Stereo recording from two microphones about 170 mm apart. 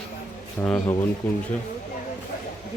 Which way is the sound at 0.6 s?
10° left (ahead or behind).